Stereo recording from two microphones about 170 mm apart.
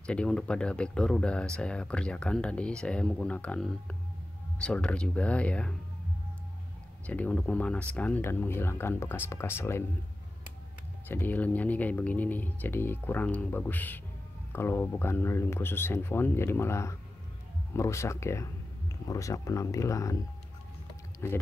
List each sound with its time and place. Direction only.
0.0 s speech: 5° left (ahead or behind)
7.1 s speech: 10° left (ahead or behind)
11.1 s speech: 10° left (ahead or behind)
21.2 s speech: 15° left (ahead or behind)